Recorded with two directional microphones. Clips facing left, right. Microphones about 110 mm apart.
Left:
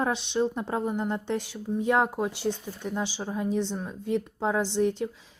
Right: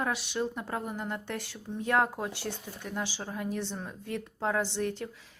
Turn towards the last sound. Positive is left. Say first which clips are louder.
# left 7 dB
turn(degrees=20)  # may be behind; listen again after turning